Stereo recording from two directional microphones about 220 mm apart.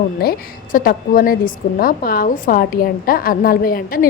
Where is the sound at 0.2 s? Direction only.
40° left (ahead or behind).